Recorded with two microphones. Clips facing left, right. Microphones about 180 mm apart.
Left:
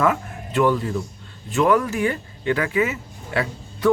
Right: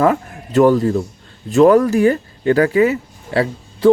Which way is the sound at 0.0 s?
40° right (ahead or behind).